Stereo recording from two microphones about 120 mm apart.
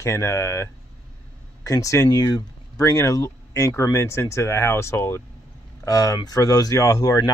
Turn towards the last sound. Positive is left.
turn(degrees=30)  # may be behind; listen again after turning